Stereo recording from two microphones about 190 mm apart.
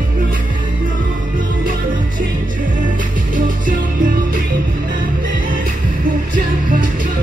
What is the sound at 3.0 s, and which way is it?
Music, 45° right (ahead or behind).